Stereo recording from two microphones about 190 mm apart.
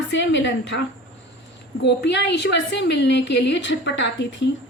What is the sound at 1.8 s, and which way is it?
A woman's voice, 65° left (ahead or behind).